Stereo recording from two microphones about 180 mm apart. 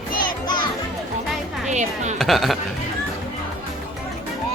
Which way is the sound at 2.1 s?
Centre (ahead or behind).